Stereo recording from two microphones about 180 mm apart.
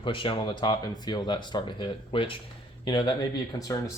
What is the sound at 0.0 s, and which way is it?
Speech, 30° left (ahead or behind).